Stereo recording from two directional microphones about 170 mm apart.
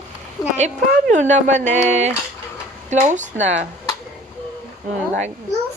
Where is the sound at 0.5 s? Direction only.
45° right (ahead or behind).